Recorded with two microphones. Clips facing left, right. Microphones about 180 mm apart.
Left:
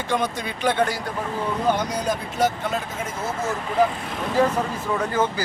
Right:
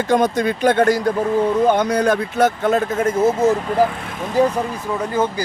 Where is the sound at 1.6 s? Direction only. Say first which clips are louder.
Right 7 dB; 55° right (ahead or behind).